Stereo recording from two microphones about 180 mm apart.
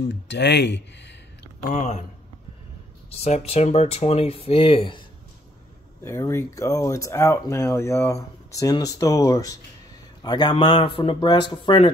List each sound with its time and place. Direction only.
0.1 s speech: 70° left (ahead or behind)
1.7 s speech: 40° left (ahead or behind)
3.1 s speech: 35° left (ahead or behind)
6.0 s speech: 15° left (ahead or behind)